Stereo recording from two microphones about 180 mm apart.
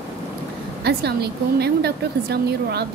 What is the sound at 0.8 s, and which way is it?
A woman's voice, 65° right (ahead or behind).